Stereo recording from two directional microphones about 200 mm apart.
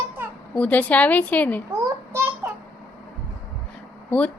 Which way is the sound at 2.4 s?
10° right (ahead or behind).